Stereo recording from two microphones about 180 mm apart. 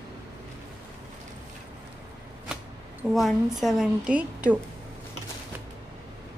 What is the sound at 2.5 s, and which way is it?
Speech, centre (ahead or behind).